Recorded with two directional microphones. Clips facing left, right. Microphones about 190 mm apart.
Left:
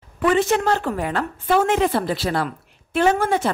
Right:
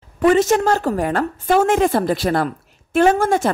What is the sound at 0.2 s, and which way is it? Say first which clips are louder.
A woman's voice: right 4 dB; 40° right (ahead or behind).